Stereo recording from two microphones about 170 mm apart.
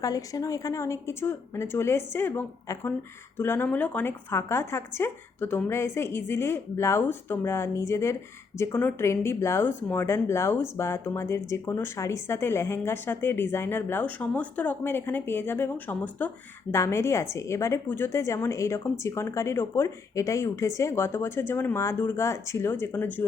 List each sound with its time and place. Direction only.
0.0 s speech: 20° left (ahead or behind)